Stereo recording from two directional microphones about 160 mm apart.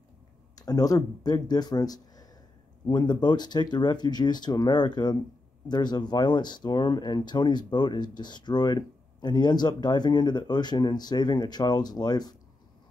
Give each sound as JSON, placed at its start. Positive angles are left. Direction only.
{"t": 0.6, "sound": "speech", "side_deg": 25}